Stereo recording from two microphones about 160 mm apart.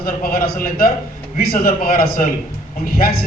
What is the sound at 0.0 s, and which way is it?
A man's voice, 70° left (ahead or behind).